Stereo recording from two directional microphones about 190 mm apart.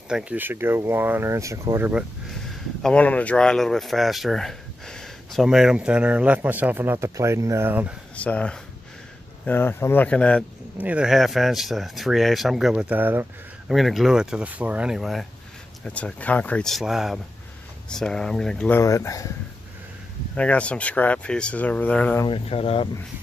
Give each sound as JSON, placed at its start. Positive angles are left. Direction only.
{"t": 0.1, "sound": "speech", "side_deg": -5}
{"t": 2.8, "sound": "speech", "side_deg": 5}
{"t": 8.2, "sound": "speech", "side_deg": 5}
{"t": 10.8, "sound": "speech", "side_deg": -5}
{"t": 13.7, "sound": "speech", "side_deg": 0}
{"t": 18.8, "sound": "speech", "side_deg": 15}
{"t": 20.3, "sound": "speech", "side_deg": 5}
{"t": 22.2, "sound": "speech", "side_deg": 30}